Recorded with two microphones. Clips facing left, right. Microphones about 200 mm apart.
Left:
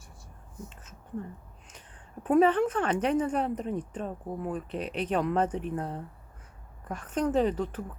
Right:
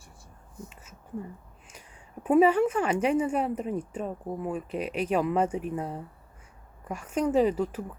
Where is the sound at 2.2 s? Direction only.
10° right (ahead or behind).